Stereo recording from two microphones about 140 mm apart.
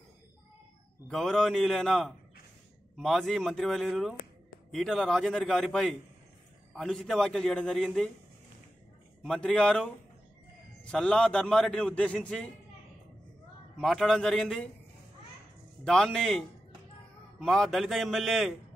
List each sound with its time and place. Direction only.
1.0 s a man's voice: 5° left (ahead or behind)
9.2 s a man's voice: 5° left (ahead or behind)
13.7 s a man's voice: 5° left (ahead or behind)
15.8 s a man's voice: 5° left (ahead or behind)